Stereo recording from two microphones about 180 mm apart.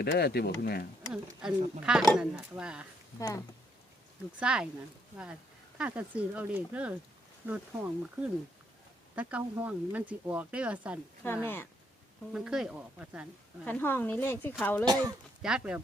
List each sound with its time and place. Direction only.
0.0 s speech: 65° left (ahead or behind)
1.4 s speech: 5° right (ahead or behind)
3.2 s speech: 15° left (ahead or behind)
4.4 s speech: 5° right (ahead or behind)
11.4 s speech: 10° left (ahead or behind)
12.3 s speech: 5° right (ahead or behind)
13.7 s speech: 10° left (ahead or behind)
15.4 s speech: 5° right (ahead or behind)